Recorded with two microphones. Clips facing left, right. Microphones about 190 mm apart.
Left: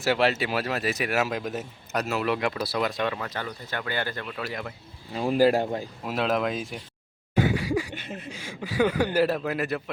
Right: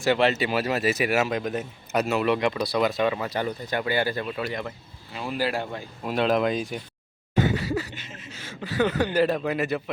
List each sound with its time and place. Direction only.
0.0 s speech: 5° left (ahead or behind); by 4.4 s 10° right (ahead or behind)
4.4 s speech: centre (ahead or behind)
5.1 s speech: 40° left (ahead or behind)
6.1 s speech: centre (ahead or behind)
7.3 s a sound: 10° left (ahead or behind)
7.9 s a sound: 60° left (ahead or behind)
8.3 s speech: 10° left (ahead or behind)